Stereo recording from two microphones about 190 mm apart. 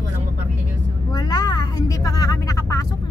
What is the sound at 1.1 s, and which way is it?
Vehicle, 20° left (ahead or behind).